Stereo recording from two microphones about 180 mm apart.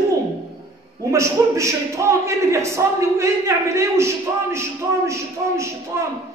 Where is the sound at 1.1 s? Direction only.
15° right (ahead or behind).